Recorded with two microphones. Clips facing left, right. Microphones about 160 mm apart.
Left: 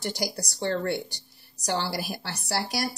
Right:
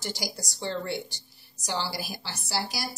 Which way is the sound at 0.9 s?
Centre (ahead or behind).